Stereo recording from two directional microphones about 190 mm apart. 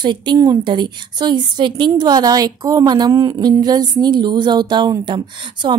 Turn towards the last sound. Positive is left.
turn(degrees=-25)  # may be behind; listen again after turning